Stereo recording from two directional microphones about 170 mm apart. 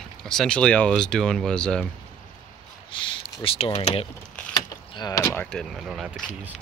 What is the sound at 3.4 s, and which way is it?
Speech, 35° left (ahead or behind).